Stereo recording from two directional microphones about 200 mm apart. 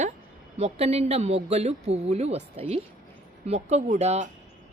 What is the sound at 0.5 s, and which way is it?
Speech, 30° right (ahead or behind).